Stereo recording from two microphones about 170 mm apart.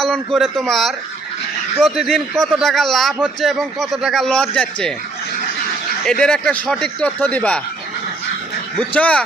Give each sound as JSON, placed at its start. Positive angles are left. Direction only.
{"t": 0.0, "sound": "a man's voice", "side_deg": 0}
{"t": 6.1, "sound": "speech", "side_deg": 5}
{"t": 8.8, "sound": "speech", "side_deg": 10}